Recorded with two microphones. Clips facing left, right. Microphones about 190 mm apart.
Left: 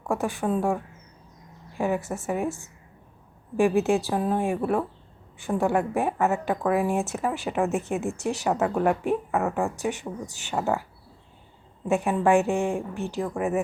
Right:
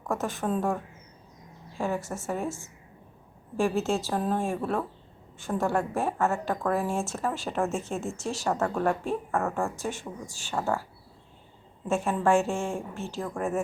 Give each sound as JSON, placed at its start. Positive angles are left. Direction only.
{"t": 0.1, "sound": "a woman's voice", "side_deg": 15}
{"t": 11.9, "sound": "a woman's voice", "side_deg": 15}